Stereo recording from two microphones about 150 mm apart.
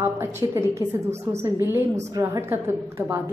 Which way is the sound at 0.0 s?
15° right (ahead or behind).